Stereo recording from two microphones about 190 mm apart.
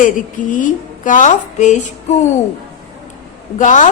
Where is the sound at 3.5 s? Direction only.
40° left (ahead or behind).